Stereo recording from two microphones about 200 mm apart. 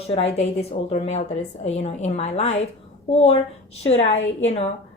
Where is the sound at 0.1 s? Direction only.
30° left (ahead or behind).